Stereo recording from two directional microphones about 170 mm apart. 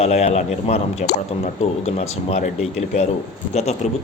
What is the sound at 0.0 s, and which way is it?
Speech, 40° left (ahead or behind).